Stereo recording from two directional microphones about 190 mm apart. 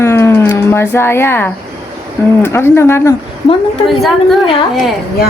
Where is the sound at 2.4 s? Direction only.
15° left (ahead or behind).